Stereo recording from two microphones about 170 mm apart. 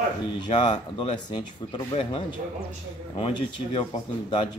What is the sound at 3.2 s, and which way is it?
Speech, 35° left (ahead or behind).